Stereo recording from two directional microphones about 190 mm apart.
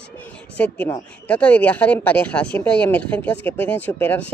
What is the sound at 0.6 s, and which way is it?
Speech, 10° left (ahead or behind).